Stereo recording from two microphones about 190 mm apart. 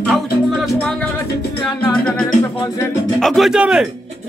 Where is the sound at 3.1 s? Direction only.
Centre (ahead or behind).